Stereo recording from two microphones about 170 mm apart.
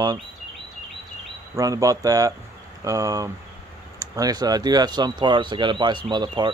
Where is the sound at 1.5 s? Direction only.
20° right (ahead or behind).